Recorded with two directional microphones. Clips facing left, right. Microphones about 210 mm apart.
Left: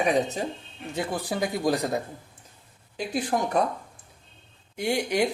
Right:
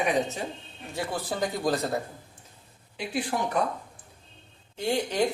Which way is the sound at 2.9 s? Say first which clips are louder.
Left 2 dB; 45° left (ahead or behind).